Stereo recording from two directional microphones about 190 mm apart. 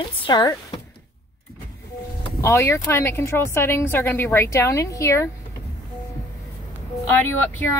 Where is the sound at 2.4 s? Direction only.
15° left (ahead or behind).